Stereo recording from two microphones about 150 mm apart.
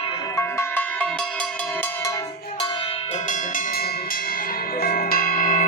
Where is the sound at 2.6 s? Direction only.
35° left (ahead or behind).